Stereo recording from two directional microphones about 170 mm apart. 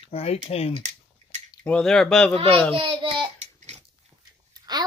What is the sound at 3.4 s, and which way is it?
Babbling, 40° right (ahead or behind).